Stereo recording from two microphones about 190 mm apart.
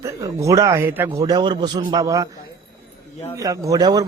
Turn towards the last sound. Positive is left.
turn(degrees=-20)  # may be behind; listen again after turning